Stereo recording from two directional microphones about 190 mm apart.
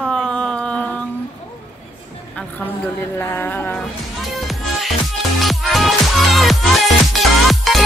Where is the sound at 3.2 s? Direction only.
10° left (ahead or behind).